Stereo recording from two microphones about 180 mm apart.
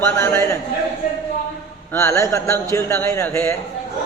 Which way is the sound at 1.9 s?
15° left (ahead or behind).